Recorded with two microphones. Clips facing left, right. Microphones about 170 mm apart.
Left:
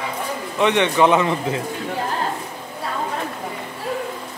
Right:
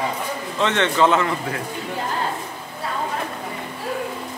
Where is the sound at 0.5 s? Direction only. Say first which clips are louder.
Left 3 dB; 15° left (ahead or behind).